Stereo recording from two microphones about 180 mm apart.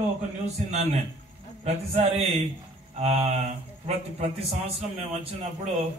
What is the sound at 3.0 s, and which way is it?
Speech, 35° right (ahead or behind).